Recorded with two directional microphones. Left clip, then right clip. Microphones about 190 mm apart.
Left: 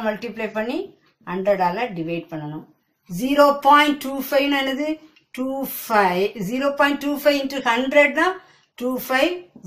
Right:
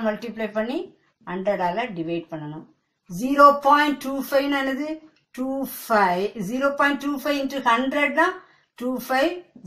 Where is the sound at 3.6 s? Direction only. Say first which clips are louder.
Left 4 dB; 20° left (ahead or behind).